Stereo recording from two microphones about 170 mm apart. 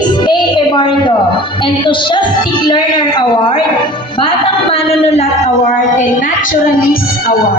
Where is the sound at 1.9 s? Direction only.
30° left (ahead or behind).